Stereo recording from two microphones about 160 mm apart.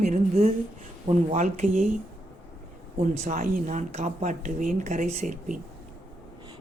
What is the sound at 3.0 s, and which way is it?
A woman's voice, 55° right (ahead or behind).